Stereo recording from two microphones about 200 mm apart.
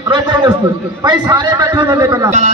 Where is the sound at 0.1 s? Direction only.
20° right (ahead or behind).